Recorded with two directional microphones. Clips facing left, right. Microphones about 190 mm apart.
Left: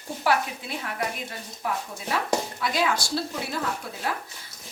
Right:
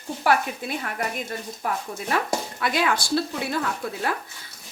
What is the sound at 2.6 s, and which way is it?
Dishes, 60° right (ahead or behind).